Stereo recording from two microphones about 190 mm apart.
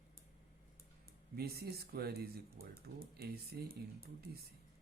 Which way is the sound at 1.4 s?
55° right (ahead or behind).